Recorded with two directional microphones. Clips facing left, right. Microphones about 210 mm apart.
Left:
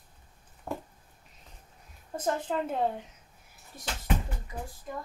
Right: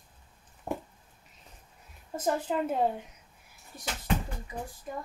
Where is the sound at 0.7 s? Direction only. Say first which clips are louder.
Right 2 dB; 20° right (ahead or behind).